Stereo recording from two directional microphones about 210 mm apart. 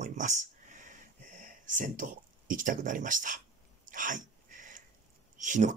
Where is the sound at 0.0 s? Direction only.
35° right (ahead or behind).